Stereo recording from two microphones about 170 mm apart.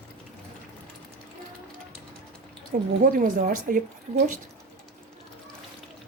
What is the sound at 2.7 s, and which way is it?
Speech, 50° right (ahead or behind).